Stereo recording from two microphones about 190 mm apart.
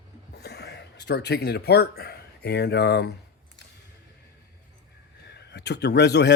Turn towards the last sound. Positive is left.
turn(degrees=65)  # may be behind; listen again after turning